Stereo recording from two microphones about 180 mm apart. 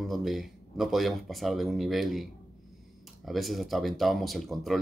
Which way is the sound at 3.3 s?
Centre (ahead or behind).